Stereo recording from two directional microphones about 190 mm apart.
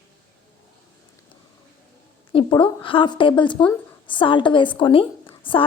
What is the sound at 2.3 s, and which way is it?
A woman's voice, 25° left (ahead or behind).